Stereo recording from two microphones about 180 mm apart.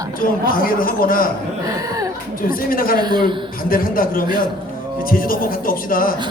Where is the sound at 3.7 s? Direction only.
50° left (ahead or behind).